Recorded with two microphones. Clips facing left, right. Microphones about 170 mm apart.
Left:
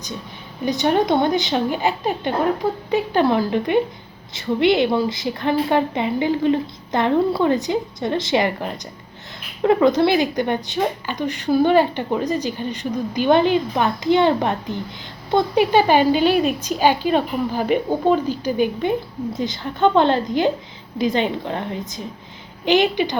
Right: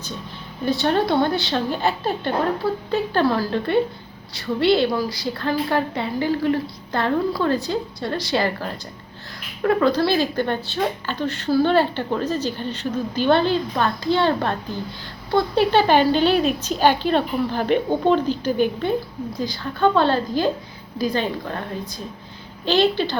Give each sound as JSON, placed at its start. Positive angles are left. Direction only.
{"t": 0.6, "sound": "a woman's voice", "side_deg": 15}